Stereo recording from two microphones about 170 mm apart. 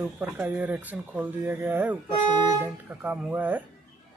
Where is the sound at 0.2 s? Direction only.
10° right (ahead or behind).